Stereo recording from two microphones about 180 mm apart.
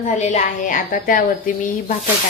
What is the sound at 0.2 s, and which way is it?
A woman's voice, 45° left (ahead or behind).